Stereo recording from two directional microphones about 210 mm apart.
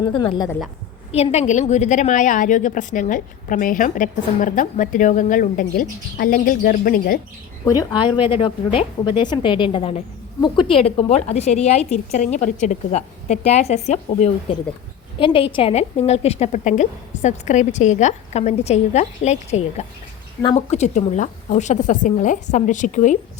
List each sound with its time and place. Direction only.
0.0 s a woman's voice: 25° left (ahead or behind); by 7.2 s 45° left (ahead or behind)
7.6 s a woman's voice: 15° left (ahead or behind); by 23.1 s 35° left (ahead or behind)